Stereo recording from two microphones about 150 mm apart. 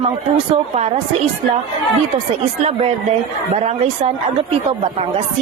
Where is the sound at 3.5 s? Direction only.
45° right (ahead or behind).